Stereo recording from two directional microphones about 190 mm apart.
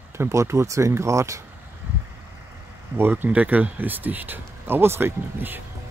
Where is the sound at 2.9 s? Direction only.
10° right (ahead or behind).